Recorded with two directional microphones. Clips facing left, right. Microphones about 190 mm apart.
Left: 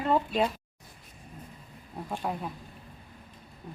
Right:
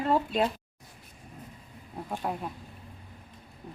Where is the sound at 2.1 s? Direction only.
5° right (ahead or behind).